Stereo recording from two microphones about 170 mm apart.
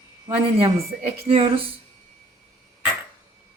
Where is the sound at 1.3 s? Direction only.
35° right (ahead or behind).